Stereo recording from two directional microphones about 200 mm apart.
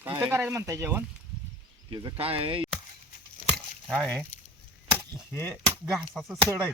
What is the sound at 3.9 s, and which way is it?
Speech, 5° left (ahead or behind).